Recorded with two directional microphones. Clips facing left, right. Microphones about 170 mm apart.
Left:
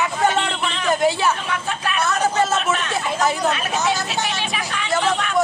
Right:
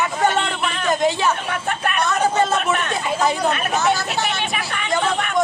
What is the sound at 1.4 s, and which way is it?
Speech, 55° right (ahead or behind).